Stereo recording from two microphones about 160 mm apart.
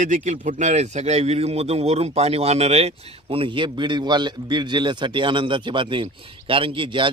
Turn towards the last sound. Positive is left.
turn(degrees=-30)  # may be behind; listen again after turning